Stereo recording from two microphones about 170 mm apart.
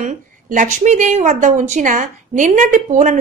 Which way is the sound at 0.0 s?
50° right (ahead or behind).